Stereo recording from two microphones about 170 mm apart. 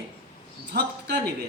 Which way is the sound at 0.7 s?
75° right (ahead or behind).